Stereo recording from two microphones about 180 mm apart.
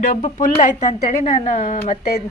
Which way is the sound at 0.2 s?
40° left (ahead or behind).